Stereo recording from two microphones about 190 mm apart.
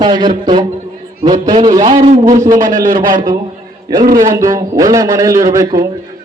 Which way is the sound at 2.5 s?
45° right (ahead or behind).